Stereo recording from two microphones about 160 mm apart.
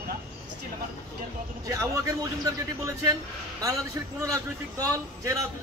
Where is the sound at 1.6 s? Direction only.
20° right (ahead or behind).